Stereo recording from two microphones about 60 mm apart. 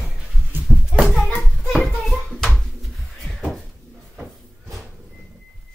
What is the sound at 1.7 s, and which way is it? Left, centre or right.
Bouncing, centre.